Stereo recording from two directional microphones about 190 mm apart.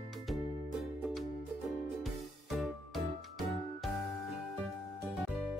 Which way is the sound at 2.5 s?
Centre (ahead or behind).